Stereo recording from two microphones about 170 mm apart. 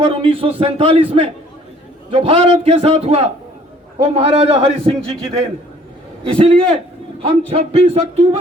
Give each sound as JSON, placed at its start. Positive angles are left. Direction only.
{"t": 0.0, "sound": "a man's voice", "side_deg": -35}
{"t": 6.2, "sound": "a man's voice", "side_deg": -30}